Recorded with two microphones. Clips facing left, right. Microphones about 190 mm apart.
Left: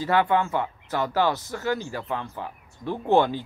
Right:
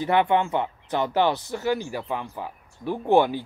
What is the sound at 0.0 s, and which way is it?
Speech, 20° right (ahead or behind).